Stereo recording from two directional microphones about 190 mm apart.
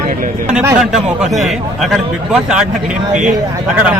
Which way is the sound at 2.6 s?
40° right (ahead or behind).